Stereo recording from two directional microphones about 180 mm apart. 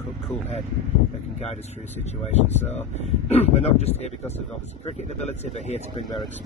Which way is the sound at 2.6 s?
10° left (ahead or behind).